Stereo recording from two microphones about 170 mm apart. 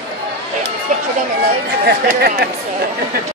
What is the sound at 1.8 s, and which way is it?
Speech, 70° right (ahead or behind).